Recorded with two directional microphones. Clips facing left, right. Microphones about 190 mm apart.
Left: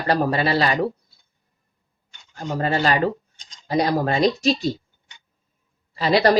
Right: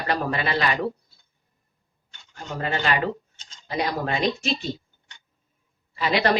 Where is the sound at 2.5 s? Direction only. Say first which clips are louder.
Left 4 dB; 35° left (ahead or behind).